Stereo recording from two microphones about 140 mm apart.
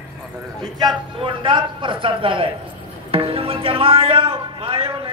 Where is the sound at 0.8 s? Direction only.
35° right (ahead or behind).